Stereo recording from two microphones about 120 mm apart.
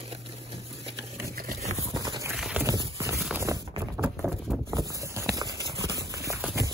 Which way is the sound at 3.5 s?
30° right (ahead or behind).